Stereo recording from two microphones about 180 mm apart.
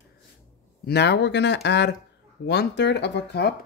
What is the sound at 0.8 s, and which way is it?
Speech, 65° left (ahead or behind).